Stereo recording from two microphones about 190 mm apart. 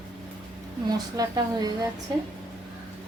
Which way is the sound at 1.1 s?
20° right (ahead or behind).